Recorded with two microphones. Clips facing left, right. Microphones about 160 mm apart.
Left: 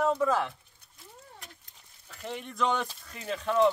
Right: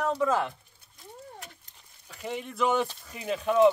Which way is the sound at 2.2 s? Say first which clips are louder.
Right 2 dB; 5° right (ahead or behind).